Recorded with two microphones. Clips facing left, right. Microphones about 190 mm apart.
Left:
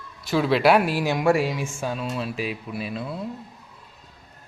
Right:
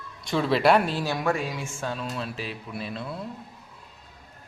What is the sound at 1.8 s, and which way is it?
Speech, 10° left (ahead or behind).